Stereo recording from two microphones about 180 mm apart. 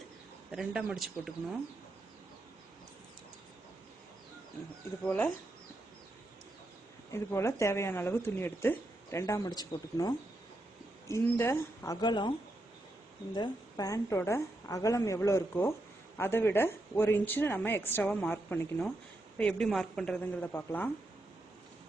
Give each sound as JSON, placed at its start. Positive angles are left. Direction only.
{"t": 0.5, "sound": "a woman's voice", "side_deg": 0}
{"t": 5.0, "sound": "a woman's voice", "side_deg": 10}
{"t": 7.1, "sound": "a woman's voice", "side_deg": 15}
{"t": 13.3, "sound": "a woman's voice", "side_deg": 20}